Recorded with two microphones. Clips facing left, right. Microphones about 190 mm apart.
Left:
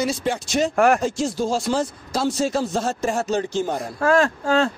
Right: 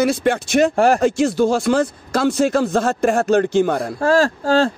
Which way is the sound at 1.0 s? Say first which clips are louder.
Right 7 dB; 65° right (ahead or behind).